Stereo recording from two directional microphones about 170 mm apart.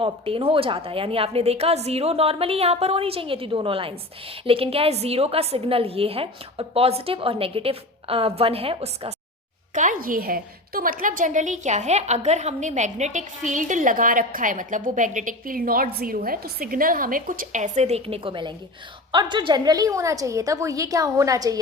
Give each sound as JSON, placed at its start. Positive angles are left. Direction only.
{"t": 0.0, "sound": "a woman's voice", "side_deg": -35}
{"t": 9.7, "sound": "a woman's voice", "side_deg": -50}